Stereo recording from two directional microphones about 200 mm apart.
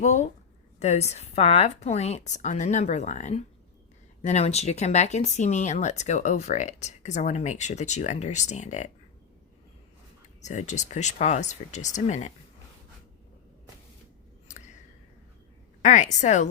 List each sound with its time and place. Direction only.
0.0 s speech: 35° left (ahead or behind)
10.4 s speech: 35° left (ahead or behind)
14.4 s a sound: 40° left (ahead or behind)
15.8 s speech: 35° left (ahead or behind)